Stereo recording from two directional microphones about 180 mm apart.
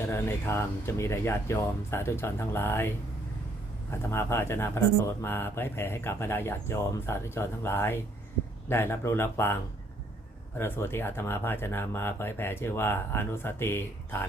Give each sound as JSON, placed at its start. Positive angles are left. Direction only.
{"t": 0.1, "sound": "speech", "side_deg": 15}
{"t": 3.9, "sound": "speech", "side_deg": 15}
{"t": 10.6, "sound": "speech", "side_deg": 15}